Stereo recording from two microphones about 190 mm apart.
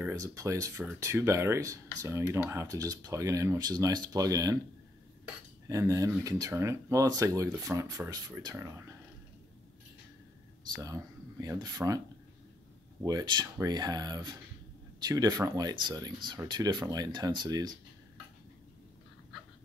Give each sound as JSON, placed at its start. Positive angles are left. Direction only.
{"t": 0.0, "sound": "speech", "side_deg": -15}
{"t": 5.7, "sound": "speech", "side_deg": -15}
{"t": 10.7, "sound": "speech", "side_deg": -20}
{"t": 13.0, "sound": "speech", "side_deg": -20}